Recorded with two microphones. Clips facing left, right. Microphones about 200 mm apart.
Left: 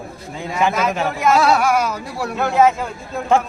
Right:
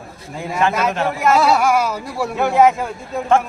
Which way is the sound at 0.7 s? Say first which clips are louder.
Right 1 dB; 5° right (ahead or behind).